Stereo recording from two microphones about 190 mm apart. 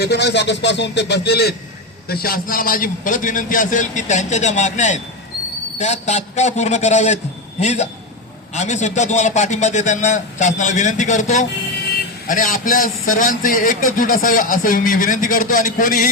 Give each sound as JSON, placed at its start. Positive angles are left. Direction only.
{"t": 0.0, "sound": "a man's voice", "side_deg": 60}